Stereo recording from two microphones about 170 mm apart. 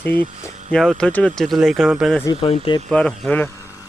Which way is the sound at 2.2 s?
30° left (ahead or behind).